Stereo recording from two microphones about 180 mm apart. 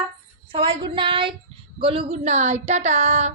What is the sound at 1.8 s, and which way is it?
Female singing, 30° right (ahead or behind).